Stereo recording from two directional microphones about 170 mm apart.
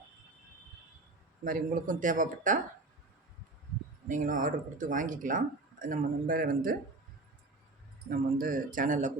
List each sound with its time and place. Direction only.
1.5 s speech: 50° right (ahead or behind)
4.1 s speech: 50° right (ahead or behind)
8.1 s speech: 55° right (ahead or behind)